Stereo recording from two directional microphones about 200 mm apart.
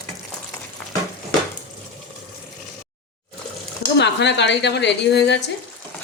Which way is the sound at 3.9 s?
60° left (ahead or behind).